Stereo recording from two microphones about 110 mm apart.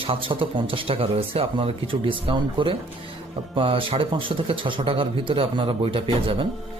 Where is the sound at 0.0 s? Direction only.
50° right (ahead or behind).